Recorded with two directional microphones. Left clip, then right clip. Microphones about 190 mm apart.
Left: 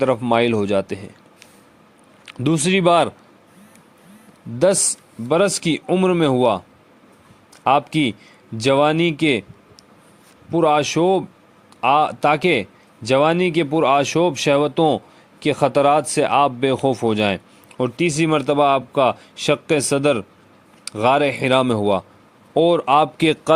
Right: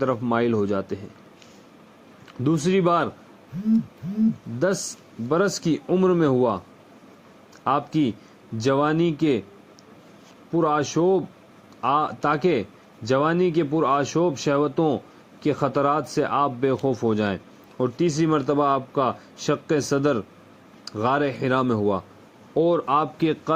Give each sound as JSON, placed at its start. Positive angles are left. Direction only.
{"t": 0.0, "sound": "speech", "side_deg": 55}
{"t": 2.2, "sound": "speech", "side_deg": 50}
{"t": 5.3, "sound": "speech", "side_deg": 55}
{"t": 7.6, "sound": "speech", "side_deg": 50}
{"t": 10.5, "sound": "speech", "side_deg": 55}